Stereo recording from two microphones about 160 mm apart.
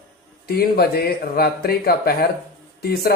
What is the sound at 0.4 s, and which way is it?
Speech, 75° left (ahead or behind).